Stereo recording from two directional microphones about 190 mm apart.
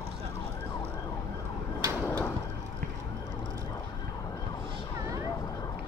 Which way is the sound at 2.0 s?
10° left (ahead or behind).